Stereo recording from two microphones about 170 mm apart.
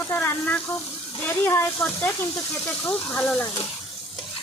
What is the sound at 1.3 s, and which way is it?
Speech, 15° left (ahead or behind).